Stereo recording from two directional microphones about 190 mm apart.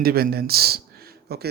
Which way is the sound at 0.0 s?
55° right (ahead or behind).